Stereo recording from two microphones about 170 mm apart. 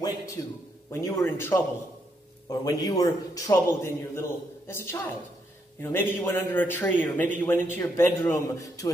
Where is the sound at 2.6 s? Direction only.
20° left (ahead or behind).